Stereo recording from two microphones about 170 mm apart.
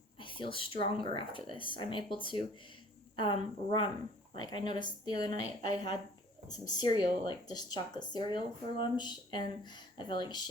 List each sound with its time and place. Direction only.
0.2 s speech: 30° left (ahead or behind)